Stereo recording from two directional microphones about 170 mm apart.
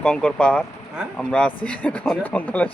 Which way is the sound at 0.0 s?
5° left (ahead or behind).